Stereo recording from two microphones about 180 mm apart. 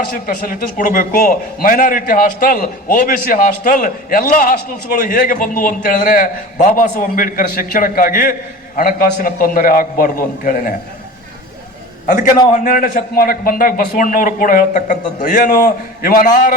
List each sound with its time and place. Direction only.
0.0 s a man's voice: 55° left (ahead or behind)
12.5 s a man's voice: 50° left (ahead or behind)